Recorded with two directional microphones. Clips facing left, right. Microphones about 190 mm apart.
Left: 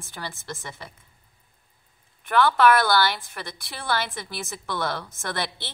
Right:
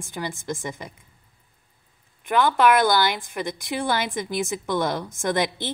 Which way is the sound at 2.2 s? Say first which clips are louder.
Even; 15° right (ahead or behind).